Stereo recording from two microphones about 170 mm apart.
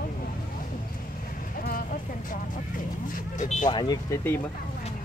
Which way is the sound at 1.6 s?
60° left (ahead or behind).